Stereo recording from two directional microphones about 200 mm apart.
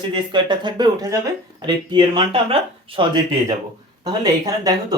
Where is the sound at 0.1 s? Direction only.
25° right (ahead or behind).